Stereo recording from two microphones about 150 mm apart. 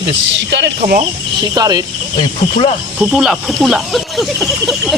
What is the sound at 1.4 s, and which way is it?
Speech, 25° right (ahead or behind).